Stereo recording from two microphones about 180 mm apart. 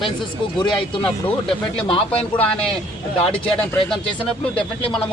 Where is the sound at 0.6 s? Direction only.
25° left (ahead or behind).